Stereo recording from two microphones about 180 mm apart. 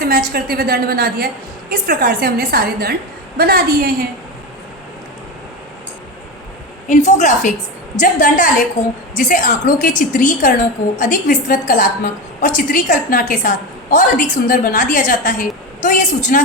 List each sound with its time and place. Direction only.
0.0 s a woman's voice: 55° right (ahead or behind)
6.8 s a woman's voice: 45° left (ahead or behind)